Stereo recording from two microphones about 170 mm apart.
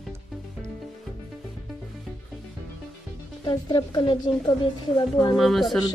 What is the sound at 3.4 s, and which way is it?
Speech, 25° left (ahead or behind).